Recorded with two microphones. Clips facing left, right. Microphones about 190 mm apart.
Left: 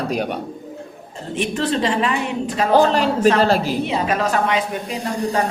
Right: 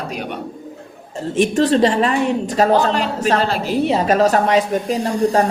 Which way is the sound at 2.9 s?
40° left (ahead or behind).